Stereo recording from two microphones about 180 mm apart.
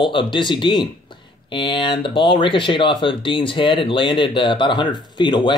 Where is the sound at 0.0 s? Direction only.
25° left (ahead or behind).